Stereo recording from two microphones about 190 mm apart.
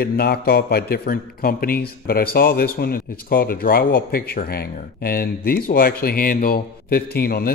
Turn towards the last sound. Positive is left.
turn(degrees=50)  # may be behind; listen again after turning